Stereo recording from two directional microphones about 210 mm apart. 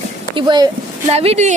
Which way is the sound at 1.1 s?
30° right (ahead or behind).